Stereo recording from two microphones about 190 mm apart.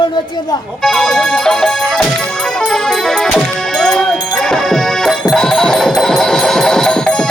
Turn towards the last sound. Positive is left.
turn(degrees=5)  # may be behind; listen again after turning